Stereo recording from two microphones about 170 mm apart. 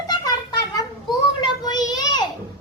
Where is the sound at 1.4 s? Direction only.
25° left (ahead or behind).